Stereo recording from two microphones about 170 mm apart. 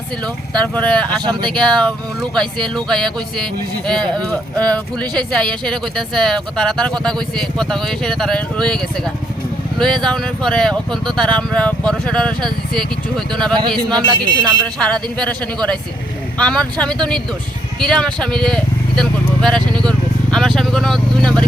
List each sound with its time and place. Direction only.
0.5 s speech: 5° left (ahead or behind)
1.2 s speech: 25° right (ahead or behind)
1.5 s speech: 5° left (ahead or behind)
13.6 s speech: 25° right (ahead or behind)
14.4 s speech: 5° left (ahead or behind)
19.8 s vehicle: 5° left (ahead or behind)